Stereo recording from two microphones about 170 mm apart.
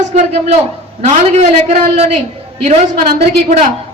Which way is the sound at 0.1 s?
40° right (ahead or behind).